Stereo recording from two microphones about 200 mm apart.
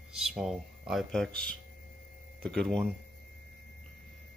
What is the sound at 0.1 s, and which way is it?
Speech, centre (ahead or behind).